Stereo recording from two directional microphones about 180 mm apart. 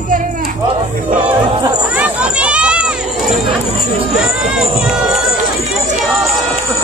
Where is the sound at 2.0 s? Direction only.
5° right (ahead or behind).